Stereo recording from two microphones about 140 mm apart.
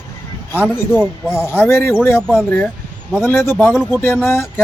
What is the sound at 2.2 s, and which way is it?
Speech, 5° right (ahead or behind).